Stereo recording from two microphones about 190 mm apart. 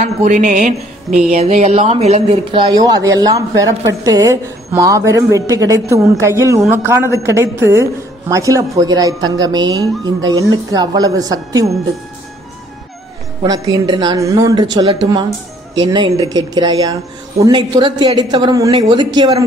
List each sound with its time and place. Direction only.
0.0 s a man's voice: 40° right (ahead or behind); by 11.7 s 20° right (ahead or behind)
13.5 s speech: 20° right (ahead or behind)